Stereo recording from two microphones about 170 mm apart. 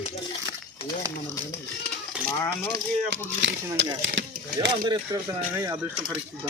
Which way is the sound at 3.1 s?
90° right.